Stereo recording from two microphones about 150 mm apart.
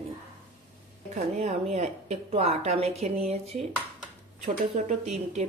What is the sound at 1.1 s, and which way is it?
Speech, 45° right (ahead or behind).